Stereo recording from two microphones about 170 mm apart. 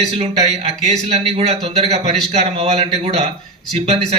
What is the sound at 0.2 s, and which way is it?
Speech, 40° right (ahead or behind).